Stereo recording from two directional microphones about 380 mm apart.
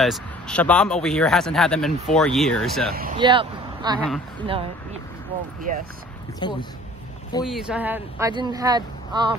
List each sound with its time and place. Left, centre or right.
0.0 s speech: centre
2.9 s speech: right
3.2 s speech: centre
4.0 s speech: centre
6.4 s speech: centre
7.4 s speech: centre